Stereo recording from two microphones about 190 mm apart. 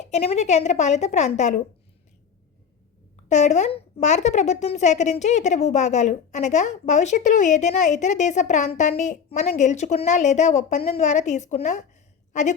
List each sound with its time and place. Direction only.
0.0 s speech: 35° left (ahead or behind)
3.2 s a woman's voice: 40° left (ahead or behind)